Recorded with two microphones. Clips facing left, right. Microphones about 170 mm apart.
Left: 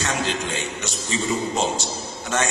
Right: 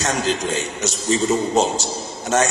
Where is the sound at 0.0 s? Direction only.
40° right (ahead or behind).